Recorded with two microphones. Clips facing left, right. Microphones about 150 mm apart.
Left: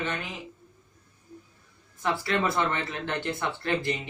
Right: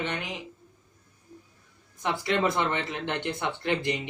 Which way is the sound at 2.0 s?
20° right (ahead or behind).